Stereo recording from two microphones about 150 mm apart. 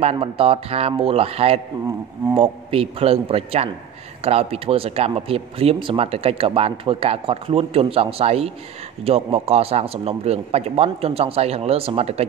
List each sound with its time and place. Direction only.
0.0 s a man's voice: 40° right (ahead or behind)